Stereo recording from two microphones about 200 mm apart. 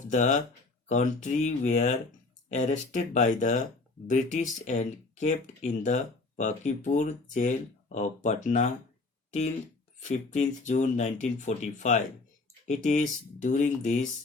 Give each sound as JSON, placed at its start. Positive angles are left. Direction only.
{"t": 0.1, "sound": "speech", "side_deg": 40}
{"t": 10.0, "sound": "speech", "side_deg": 40}